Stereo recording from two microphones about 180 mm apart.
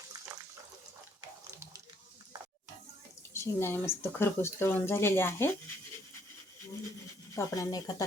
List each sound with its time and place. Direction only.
0.3 s water: 15° right (ahead or behind)
3.3 s speech: 15° left (ahead or behind)
7.3 s speech: 20° left (ahead or behind)